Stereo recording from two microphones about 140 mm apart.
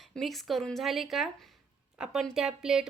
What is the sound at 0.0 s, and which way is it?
Speech, centre (ahead or behind).